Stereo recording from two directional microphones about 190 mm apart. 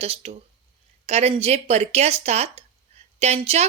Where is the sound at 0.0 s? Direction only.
30° right (ahead or behind).